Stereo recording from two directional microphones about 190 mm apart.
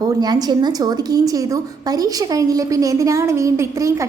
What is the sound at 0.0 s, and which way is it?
A woman's voice, 20° right (ahead or behind).